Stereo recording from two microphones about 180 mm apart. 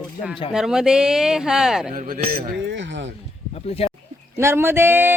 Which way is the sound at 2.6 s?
85° right.